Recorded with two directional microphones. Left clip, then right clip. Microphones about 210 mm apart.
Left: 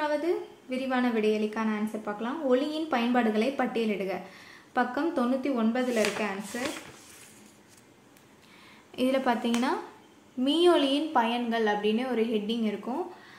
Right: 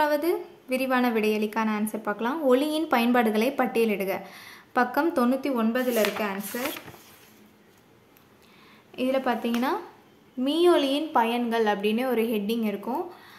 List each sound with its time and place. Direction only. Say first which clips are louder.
0.0 s a woman's voice: right 4 dB; 30° right (ahead or behind)
8.9 s a woman's voice: right 1 dB; 5° right (ahead or behind); by 12.9 s 20° right (ahead or behind)